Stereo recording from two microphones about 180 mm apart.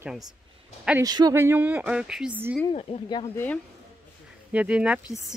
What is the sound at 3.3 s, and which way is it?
Speech, 10° left (ahead or behind).